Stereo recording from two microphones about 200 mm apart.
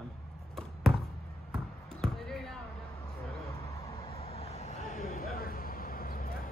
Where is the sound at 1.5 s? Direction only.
Centre (ahead or behind).